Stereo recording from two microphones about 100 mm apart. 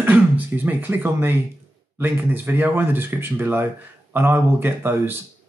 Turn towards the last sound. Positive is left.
turn(degrees=-20)  # may be behind; listen again after turning